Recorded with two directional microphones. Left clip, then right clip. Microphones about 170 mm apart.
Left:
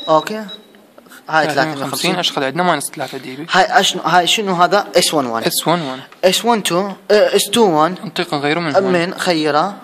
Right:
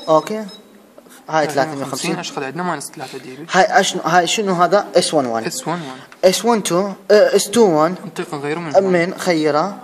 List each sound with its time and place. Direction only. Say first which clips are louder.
0.0 s a man's voice: left 1 dB; 10° right (ahead or behind)
2.0 s speech: left 10 dB; 40° left (ahead or behind)
3.4 s a man's voice: left 1 dB; 10° right (ahead or behind)
5.4 s speech: left 7 dB; 40° left (ahead or behind)
6.2 s a man's voice: left 1 dB; 10° right (ahead or behind)
8.2 s speech: left 7 dB; 45° left (ahead or behind)
8.9 s a man's voice: left 1 dB; 5° right (ahead or behind)